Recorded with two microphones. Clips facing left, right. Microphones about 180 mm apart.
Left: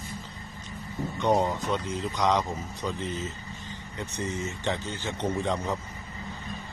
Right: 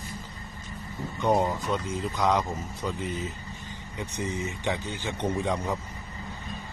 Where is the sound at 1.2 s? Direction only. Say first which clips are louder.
Even; 5° right (ahead or behind).